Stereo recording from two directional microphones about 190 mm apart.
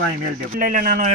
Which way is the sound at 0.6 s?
50° right (ahead or behind).